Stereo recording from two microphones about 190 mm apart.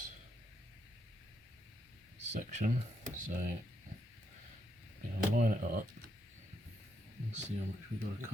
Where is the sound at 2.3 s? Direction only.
40° right (ahead or behind).